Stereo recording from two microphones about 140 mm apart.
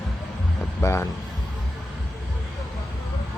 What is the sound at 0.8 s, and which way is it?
Speech, 20° left (ahead or behind).